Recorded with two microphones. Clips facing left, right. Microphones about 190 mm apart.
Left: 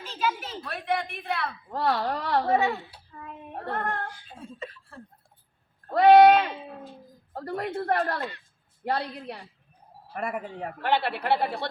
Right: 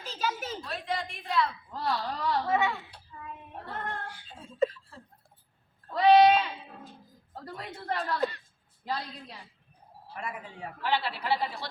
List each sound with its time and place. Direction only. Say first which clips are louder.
0.0 s a sound: left 3 dB; 40° right (ahead or behind)
0.6 s a woman's voice: left 7 dB; 60° left (ahead or behind)
2.5 s speech: left 4 dB; 35° left (ahead or behind)
3.2 s female singing: left 7 dB; 60° left (ahead or behind)
4.9 s a sound: left 5 dB; 55° left (ahead or behind)
5.9 s a woman's voice: left 4 dB; 60° left (ahead or behind)